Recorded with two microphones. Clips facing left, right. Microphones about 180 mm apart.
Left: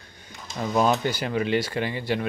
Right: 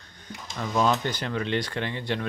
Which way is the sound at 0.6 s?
10° left (ahead or behind).